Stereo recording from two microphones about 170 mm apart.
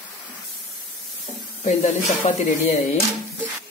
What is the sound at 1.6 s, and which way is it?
Speech, 45° left (ahead or behind).